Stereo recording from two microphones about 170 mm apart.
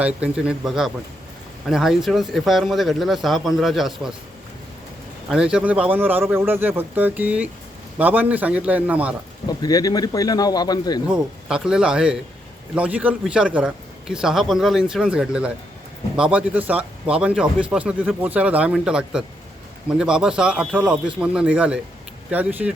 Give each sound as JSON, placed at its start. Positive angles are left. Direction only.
{"t": 0.0, "sound": "a man's voice", "side_deg": -5}
{"t": 5.3, "sound": "speech", "side_deg": -5}
{"t": 9.5, "sound": "speech", "side_deg": 25}
{"t": 11.1, "sound": "a man's voice", "side_deg": -5}